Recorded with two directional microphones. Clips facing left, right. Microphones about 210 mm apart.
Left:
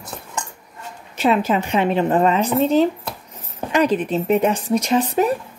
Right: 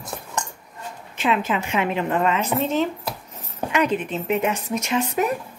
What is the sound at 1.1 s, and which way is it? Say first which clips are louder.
Speech: left 5 dB; 40° left (ahead or behind).